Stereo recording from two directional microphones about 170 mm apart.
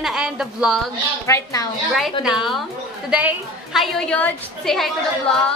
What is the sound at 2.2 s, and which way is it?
A woman's voice, centre (ahead or behind).